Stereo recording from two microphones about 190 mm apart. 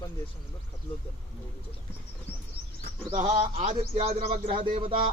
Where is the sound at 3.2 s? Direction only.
35° right (ahead or behind).